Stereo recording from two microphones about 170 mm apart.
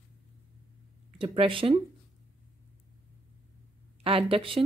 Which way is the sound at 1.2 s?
30° right (ahead or behind).